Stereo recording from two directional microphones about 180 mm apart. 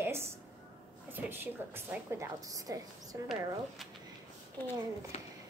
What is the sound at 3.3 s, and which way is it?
Speech, centre (ahead or behind).